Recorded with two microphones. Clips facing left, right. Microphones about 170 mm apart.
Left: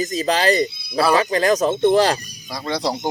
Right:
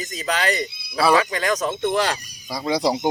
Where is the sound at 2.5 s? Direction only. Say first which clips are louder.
Right 2 dB; 5° right (ahead or behind).